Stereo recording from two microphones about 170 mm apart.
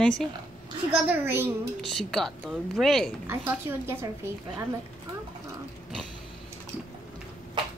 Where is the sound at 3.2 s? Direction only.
15° right (ahead or behind).